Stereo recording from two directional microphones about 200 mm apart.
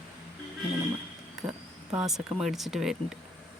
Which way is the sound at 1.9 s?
Centre (ahead or behind).